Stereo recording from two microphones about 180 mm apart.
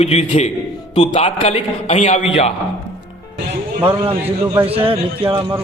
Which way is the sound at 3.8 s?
10° right (ahead or behind).